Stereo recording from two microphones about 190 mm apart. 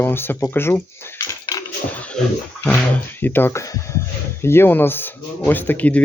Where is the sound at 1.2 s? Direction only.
20° left (ahead or behind).